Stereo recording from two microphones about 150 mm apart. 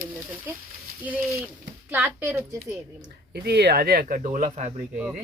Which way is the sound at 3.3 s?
90° right.